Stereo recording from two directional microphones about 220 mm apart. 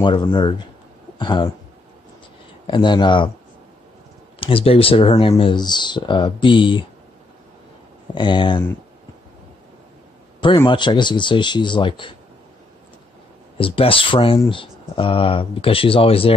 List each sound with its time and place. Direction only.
0.0 s speech: 20° left (ahead or behind)
2.6 s speech: 20° left (ahead or behind)
4.4 s speech: 25° left (ahead or behind)
8.1 s speech: 20° left (ahead or behind)
10.4 s speech: 20° left (ahead or behind)
13.6 s speech: 25° left (ahead or behind)